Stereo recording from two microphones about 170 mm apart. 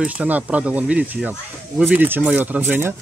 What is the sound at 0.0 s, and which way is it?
Speech, 10° right (ahead or behind).